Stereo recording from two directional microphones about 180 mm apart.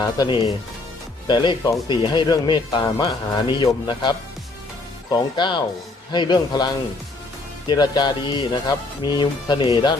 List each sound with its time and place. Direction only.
0.0 s speech: 25° left (ahead or behind)
5.1 s speech: 25° left (ahead or behind)
7.7 s speech: 25° left (ahead or behind)